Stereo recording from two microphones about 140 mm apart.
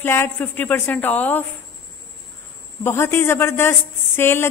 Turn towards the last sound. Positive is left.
turn(degrees=15)  # may be behind; listen again after turning